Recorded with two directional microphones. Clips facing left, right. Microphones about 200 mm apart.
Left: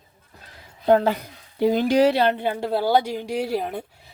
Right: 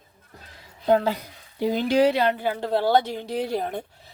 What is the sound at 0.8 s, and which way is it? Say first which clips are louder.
A woman's voice: left 3 dB; 50° left (ahead or behind).